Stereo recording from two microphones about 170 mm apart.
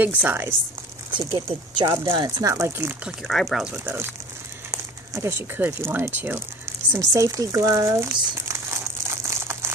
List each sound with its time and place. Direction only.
0.0 s speech: 10° right (ahead or behind)
3.3 s speech: centre (ahead or behind)
6.9 s crumpling: 15° right (ahead or behind)